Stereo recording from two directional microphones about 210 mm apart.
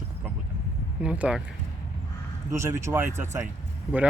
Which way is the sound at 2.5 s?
10° right (ahead or behind).